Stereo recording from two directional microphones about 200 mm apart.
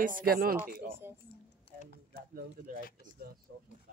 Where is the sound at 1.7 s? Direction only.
30° left (ahead or behind).